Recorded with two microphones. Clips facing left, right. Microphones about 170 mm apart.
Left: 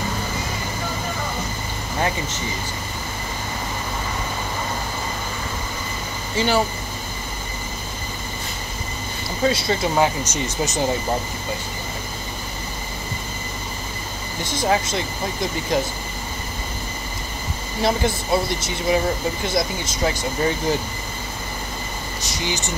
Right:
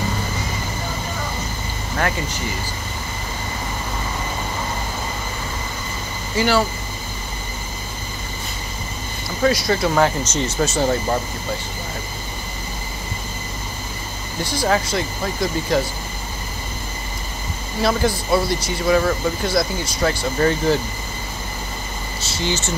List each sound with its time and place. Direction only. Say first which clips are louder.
2.0 s speech: right 1 dB; 20° left (ahead or behind)
6.3 s speech: right 2 dB; 20° left (ahead or behind)
9.5 s speech: right 3 dB; 25° left (ahead or behind)
14.4 s speech: right 1 dB; 20° left (ahead or behind)
17.8 s speech: right 2 dB; 20° left (ahead or behind)
22.2 s speech: right 3 dB; 15° left (ahead or behind)